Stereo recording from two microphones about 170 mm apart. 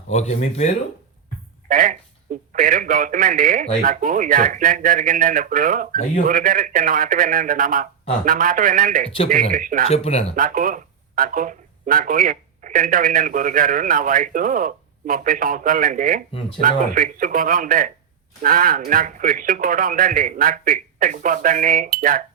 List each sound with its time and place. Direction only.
0.1 s speech: 40° left (ahead or behind)
1.6 s speech: 50° right (ahead or behind)
9.9 s speech: 40° left (ahead or behind)
10.3 s speech: 50° right (ahead or behind)